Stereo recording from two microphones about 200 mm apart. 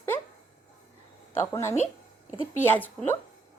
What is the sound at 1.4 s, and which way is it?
A woman's voice, 15° left (ahead or behind).